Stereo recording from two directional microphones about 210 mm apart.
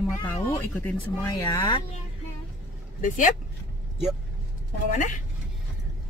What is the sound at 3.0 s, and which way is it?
Speech, 40° left (ahead or behind).